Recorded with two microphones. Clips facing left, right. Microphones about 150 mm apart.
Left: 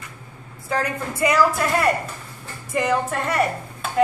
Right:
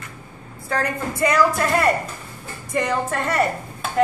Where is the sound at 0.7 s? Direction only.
5° left (ahead or behind).